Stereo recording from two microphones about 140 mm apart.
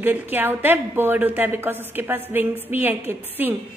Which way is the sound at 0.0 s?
15° right (ahead or behind).